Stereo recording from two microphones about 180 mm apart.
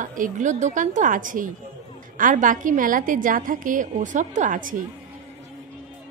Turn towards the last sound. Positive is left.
turn(degrees=-50)  # may be behind; listen again after turning